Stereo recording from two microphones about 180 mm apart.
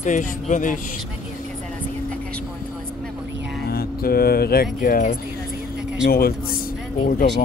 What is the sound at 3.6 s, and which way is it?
Speech, 55° left (ahead or behind).